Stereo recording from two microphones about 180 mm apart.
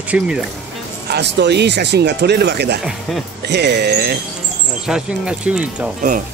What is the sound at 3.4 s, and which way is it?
Speech, 70° right (ahead or behind).